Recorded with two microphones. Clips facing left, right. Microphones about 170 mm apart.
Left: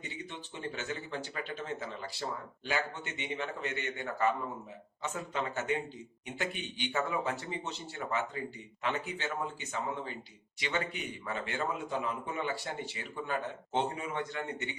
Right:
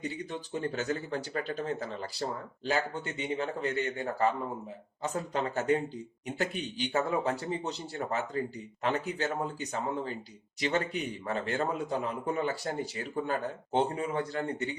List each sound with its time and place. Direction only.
0.0 s a man's voice: 40° right (ahead or behind)